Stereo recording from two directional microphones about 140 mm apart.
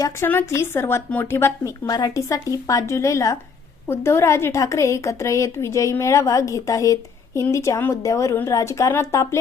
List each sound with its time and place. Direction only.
0.0 s a woman's voice: 15° left (ahead or behind)